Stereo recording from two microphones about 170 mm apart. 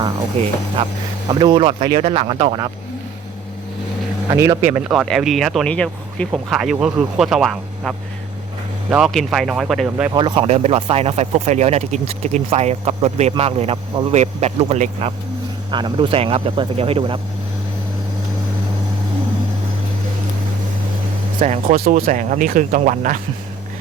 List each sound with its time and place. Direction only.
1.3 s speech: 30° right (ahead or behind)
4.3 s speech: 15° right (ahead or behind)
4.9 s speech: centre (ahead or behind)
10.2 s speech: 30° right (ahead or behind)
21.3 s speech: 45° right (ahead or behind)
21.8 s speech: 60° right (ahead or behind)